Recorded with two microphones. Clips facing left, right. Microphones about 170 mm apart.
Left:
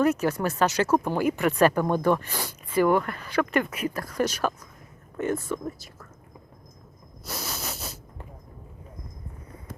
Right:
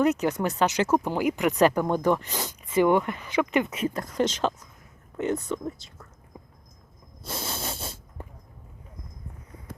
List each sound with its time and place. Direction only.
0.0 s speech: 20° right (ahead or behind)
7.3 s hiss: 25° right (ahead or behind)